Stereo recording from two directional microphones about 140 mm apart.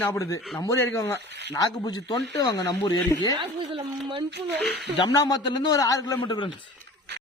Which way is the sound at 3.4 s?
40° right (ahead or behind).